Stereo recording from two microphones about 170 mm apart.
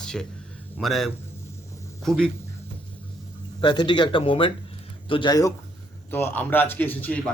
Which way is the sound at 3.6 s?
25° left (ahead or behind).